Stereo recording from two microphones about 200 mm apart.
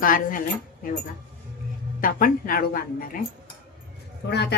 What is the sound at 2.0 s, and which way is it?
Speech, 45° left (ahead or behind).